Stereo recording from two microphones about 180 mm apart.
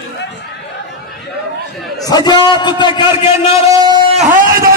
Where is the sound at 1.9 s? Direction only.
20° left (ahead or behind).